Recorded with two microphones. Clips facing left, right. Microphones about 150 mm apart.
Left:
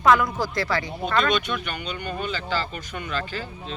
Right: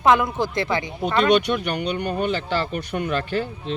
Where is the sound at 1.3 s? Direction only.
65° right (ahead or behind).